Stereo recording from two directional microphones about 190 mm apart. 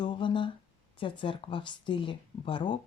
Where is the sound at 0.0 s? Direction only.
25° left (ahead or behind).